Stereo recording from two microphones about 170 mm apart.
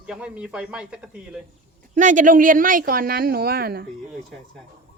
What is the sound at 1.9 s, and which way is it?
Speech, 50° right (ahead or behind).